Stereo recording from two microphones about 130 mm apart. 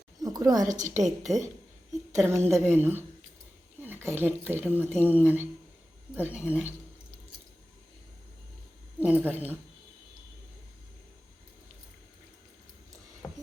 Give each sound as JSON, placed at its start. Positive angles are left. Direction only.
{"t": 0.2, "sound": "a sound", "side_deg": -30}
{"t": 0.7, "sound": "a woman's voice", "side_deg": -75}
{"t": 2.1, "sound": "a woman's voice", "side_deg": -20}
{"t": 9.0, "sound": "speech", "side_deg": -10}